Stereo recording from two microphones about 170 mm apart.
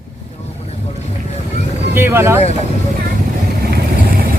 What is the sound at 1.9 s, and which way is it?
Speech, 15° right (ahead or behind).